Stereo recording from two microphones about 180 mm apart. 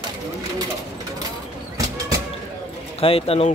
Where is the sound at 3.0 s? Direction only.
30° left (ahead or behind).